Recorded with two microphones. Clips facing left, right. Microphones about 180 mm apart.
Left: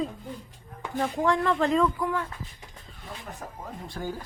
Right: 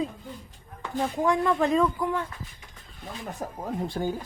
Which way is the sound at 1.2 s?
15° right (ahead or behind).